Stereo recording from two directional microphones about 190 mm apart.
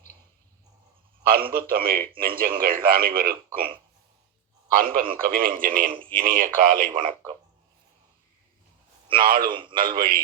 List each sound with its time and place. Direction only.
1.3 s a man's voice: 50° right (ahead or behind)
4.7 s a man's voice: 50° right (ahead or behind)
9.2 s a man's voice: 50° right (ahead or behind)
9.5 s a man's voice: 25° right (ahead or behind)
9.7 s a man's voice: 50° right (ahead or behind)